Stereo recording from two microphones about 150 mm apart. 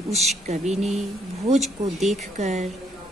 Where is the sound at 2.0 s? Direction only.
50° right (ahead or behind).